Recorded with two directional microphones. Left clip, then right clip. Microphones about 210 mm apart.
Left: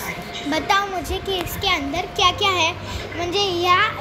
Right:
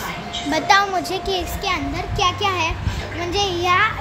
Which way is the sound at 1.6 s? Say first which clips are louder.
Left 2 dB; 5° left (ahead or behind).